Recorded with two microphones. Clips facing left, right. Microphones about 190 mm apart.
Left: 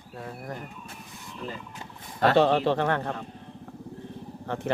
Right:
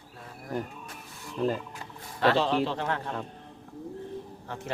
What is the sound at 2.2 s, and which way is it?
Speech, 55° left (ahead or behind).